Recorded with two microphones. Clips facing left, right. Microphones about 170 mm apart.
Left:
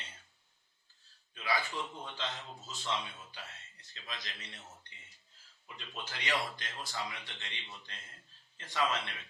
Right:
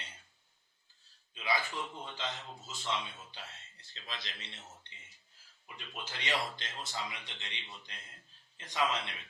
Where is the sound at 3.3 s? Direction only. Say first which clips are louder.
Even; 30° right (ahead or behind).